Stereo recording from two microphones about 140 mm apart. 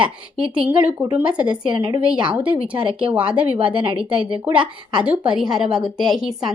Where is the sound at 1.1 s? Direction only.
10° right (ahead or behind).